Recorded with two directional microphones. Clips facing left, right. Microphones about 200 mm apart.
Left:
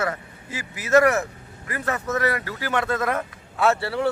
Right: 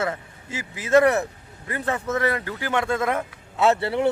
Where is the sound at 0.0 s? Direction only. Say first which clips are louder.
Even; 25° right (ahead or behind).